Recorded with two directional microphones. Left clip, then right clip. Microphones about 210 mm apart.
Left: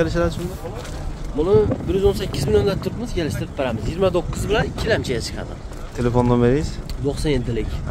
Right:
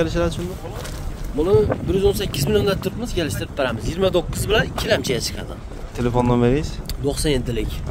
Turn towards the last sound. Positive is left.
turn(degrees=-50)  # may be behind; listen again after turning